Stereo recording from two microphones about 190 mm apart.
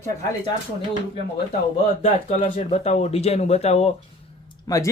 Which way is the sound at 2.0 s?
35° left (ahead or behind).